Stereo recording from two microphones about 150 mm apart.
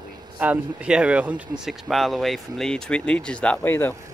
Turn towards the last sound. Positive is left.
turn(degrees=15)  # may be behind; listen again after turning